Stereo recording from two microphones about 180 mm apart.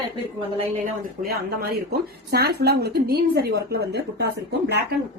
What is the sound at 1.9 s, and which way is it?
A woman's voice, 60° right (ahead or behind).